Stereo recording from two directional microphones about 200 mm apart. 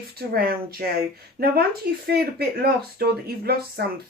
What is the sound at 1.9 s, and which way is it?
A woman's voice, 55° right (ahead or behind).